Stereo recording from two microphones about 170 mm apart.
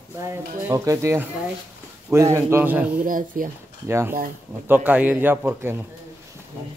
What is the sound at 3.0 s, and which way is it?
Speech, 55° right (ahead or behind).